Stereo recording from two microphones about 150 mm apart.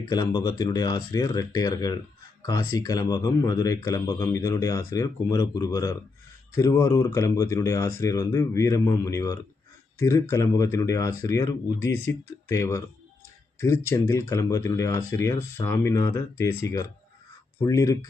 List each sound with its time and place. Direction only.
0.1 s speech: 30° left (ahead or behind)